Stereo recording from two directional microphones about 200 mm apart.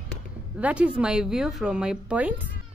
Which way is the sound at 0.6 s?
5° right (ahead or behind).